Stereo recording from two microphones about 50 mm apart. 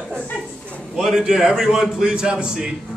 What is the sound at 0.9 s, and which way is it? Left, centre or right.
A man's voice, centre.